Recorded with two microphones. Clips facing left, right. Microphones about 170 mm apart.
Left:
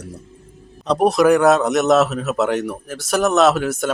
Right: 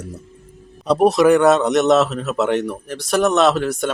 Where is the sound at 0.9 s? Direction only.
Centre (ahead or behind).